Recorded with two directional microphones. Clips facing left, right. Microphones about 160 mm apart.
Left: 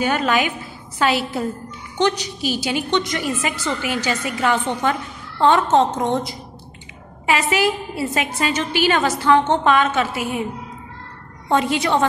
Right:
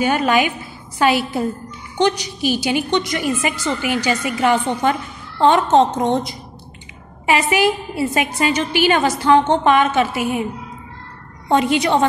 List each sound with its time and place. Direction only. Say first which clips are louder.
0.0 s a woman's voice: right 3 dB; 10° right (ahead or behind)
11.4 s a woman's voice: right 3 dB; 20° right (ahead or behind)